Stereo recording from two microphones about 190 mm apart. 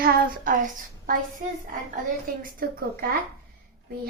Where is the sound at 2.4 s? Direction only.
50° right (ahead or behind).